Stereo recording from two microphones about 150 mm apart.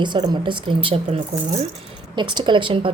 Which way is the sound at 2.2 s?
30° right (ahead or behind).